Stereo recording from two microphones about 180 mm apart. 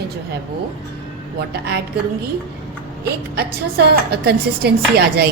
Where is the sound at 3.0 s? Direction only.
60° right (ahead or behind).